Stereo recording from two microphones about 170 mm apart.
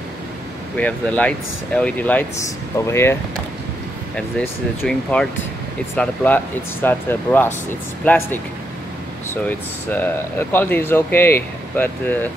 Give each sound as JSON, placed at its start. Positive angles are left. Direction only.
{"t": 0.7, "sound": "speech", "side_deg": 10}
{"t": 4.4, "sound": "speech", "side_deg": 5}